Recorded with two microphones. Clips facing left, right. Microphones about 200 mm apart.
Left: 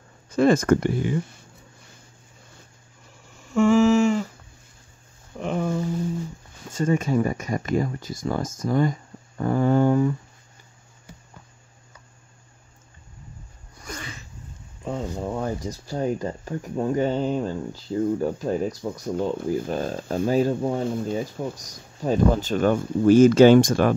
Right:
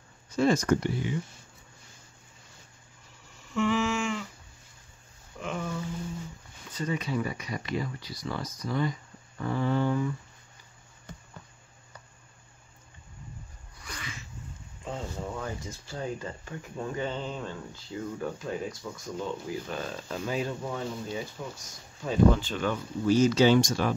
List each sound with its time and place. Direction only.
0.3 s speech: 55° left (ahead or behind)
3.5 s humming: 45° left (ahead or behind)
5.4 s a sound: 45° left (ahead or behind)
6.7 s speech: 45° left (ahead or behind)
13.8 s a sound: 40° left (ahead or behind)
14.9 s speech: 40° left (ahead or behind)